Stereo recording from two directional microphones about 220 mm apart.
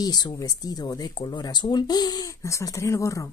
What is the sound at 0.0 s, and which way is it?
Speech, 20° left (ahead or behind).